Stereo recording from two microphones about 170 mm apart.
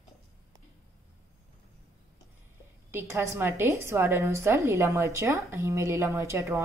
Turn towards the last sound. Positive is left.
turn(degrees=-15)  # may be behind; listen again after turning